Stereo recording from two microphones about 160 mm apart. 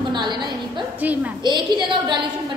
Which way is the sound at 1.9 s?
30° right (ahead or behind).